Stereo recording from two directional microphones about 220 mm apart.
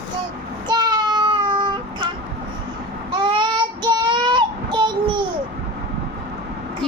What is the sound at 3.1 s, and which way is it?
Child singing, 20° right (ahead or behind).